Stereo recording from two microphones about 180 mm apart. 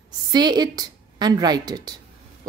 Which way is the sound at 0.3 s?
25° right (ahead or behind).